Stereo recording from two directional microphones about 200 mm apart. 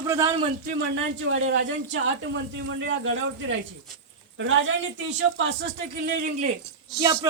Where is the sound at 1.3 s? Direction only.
85° right.